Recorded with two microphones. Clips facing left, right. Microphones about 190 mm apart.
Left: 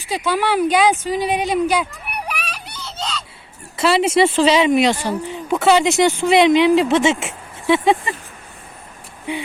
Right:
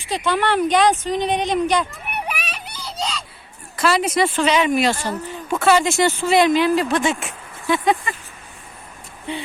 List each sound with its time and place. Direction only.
0.1 s speech: 5° left (ahead or behind)
3.8 s speech: 25° left (ahead or behind)
9.3 s speech: 10° left (ahead or behind)